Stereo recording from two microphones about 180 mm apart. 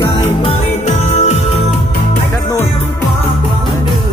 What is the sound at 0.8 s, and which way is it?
Music, 40° left (ahead or behind).